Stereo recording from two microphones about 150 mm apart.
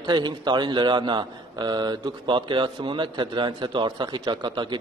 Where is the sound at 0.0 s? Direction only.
30° right (ahead or behind).